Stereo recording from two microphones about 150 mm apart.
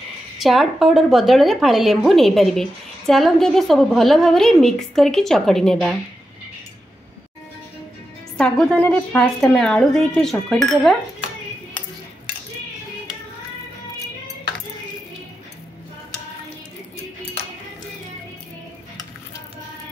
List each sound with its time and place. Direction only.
0.4 s a woman's voice: centre (ahead or behind)
8.4 s a woman's voice: 5° left (ahead or behind)